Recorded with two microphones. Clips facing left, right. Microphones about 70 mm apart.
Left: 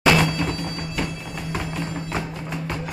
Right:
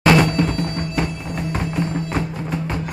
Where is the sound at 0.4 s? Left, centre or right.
Right.